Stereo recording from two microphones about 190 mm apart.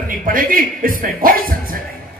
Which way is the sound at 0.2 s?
45° right (ahead or behind).